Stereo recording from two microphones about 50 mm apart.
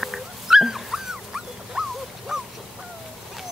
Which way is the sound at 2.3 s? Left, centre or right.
Centre.